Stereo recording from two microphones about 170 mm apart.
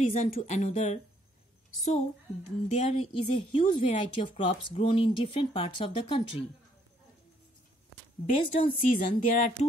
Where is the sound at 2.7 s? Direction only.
35° left (ahead or behind).